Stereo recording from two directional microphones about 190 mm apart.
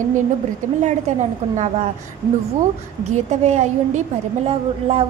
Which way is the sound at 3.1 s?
35° right (ahead or behind).